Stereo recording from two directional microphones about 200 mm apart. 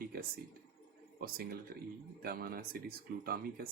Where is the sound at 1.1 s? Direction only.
50° right (ahead or behind).